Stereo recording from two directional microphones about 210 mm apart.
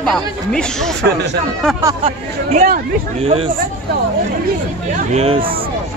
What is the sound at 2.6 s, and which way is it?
Speech, 45° right (ahead or behind).